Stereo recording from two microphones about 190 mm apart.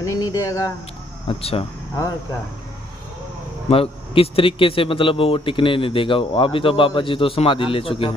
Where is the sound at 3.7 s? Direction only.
30° left (ahead or behind).